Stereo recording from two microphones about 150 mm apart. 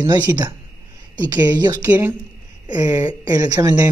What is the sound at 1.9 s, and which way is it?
Speech, 15° right (ahead or behind).